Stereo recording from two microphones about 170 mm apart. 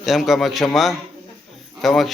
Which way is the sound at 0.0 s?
Centre (ahead or behind).